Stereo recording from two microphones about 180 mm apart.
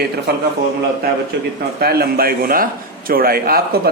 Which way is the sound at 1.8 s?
60° right (ahead or behind).